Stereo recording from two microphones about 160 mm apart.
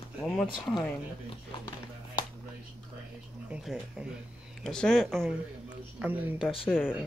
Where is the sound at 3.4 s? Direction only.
5° right (ahead or behind).